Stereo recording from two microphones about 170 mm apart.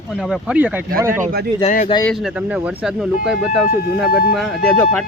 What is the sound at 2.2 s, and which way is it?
Speech, 5° right (ahead or behind).